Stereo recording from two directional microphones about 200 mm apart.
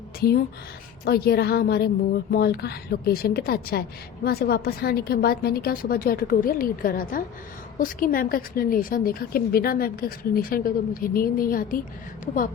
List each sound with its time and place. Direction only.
0.2 s a woman's voice: 50° left (ahead or behind)